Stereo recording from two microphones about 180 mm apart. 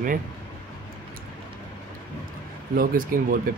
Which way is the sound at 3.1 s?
55° right (ahead or behind).